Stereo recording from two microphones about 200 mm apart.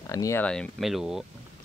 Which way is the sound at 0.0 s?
15° left (ahead or behind).